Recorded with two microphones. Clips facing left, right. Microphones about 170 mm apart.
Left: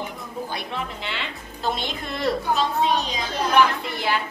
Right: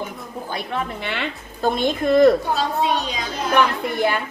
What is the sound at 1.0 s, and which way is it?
A woman's voice, 55° right (ahead or behind).